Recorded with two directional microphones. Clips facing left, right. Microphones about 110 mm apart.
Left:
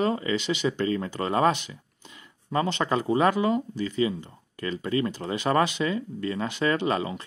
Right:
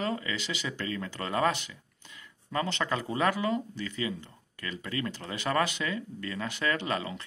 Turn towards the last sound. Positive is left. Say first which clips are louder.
# left 6 dB
turn(degrees=25)  # may be behind; listen again after turning